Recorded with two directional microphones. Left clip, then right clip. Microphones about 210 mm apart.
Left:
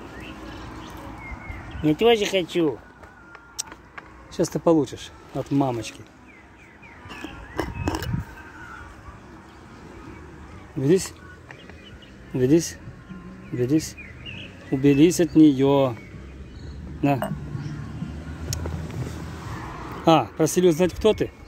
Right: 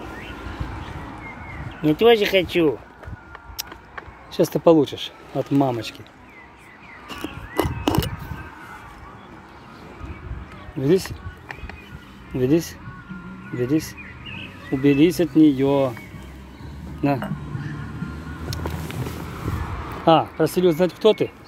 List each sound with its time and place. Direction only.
1.8 s speech: centre (ahead or behind)
3.6 s vehicle: centre (ahead or behind)
4.3 s speech: centre (ahead or behind)
7.6 s a sound: 20° right (ahead or behind)
10.8 s speech: 15° left (ahead or behind)
12.4 s speech: 20° left (ahead or behind)
17.0 s speech: 15° left (ahead or behind)
18.5 s vehicle: 15° left (ahead or behind)
20.1 s speech: 15° left (ahead or behind)